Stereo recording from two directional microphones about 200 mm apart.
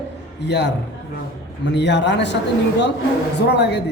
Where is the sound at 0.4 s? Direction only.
60° left (ahead or behind).